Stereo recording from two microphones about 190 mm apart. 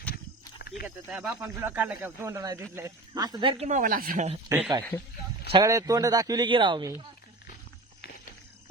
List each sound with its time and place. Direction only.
0.6 s cricket: 55° left (ahead or behind)
1.1 s speech: 5° right (ahead or behind); by 3.7 s 25° right (ahead or behind)
3.7 s speech: 45° right (ahead or behind)
4.4 s speech: 10° right (ahead or behind)
5.5 s speech: 20° right (ahead or behind)